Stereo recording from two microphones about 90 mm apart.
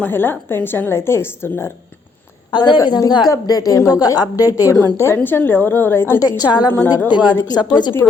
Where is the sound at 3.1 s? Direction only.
50° left (ahead or behind).